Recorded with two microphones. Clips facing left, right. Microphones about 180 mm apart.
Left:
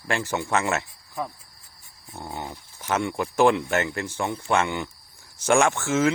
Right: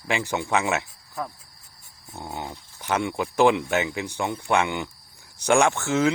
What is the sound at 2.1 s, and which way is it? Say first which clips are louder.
Speech: even; centre (ahead or behind).